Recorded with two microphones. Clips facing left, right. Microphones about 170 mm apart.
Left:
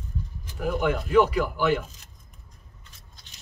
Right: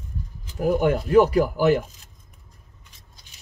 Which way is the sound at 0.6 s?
40° right (ahead or behind).